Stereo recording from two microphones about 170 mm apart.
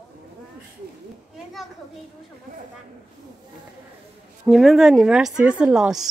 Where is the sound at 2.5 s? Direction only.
55° right (ahead or behind).